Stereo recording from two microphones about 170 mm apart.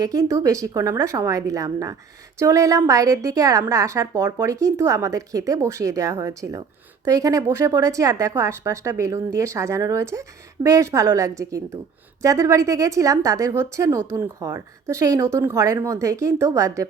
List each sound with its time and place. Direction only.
0.0 s a woman's voice: 20° right (ahead or behind)